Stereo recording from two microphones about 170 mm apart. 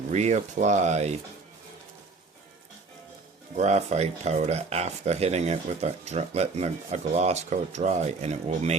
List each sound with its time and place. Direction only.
0.1 s speech: 40° right (ahead or behind)
3.5 s speech: 40° right (ahead or behind)